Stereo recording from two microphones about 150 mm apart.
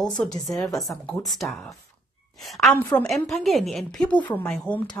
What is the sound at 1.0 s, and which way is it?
Speech, 25° left (ahead or behind).